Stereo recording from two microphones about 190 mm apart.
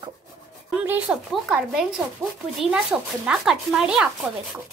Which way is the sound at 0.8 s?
5° right (ahead or behind).